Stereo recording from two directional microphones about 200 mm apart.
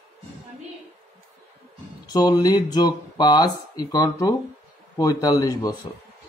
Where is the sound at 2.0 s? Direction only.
20° left (ahead or behind).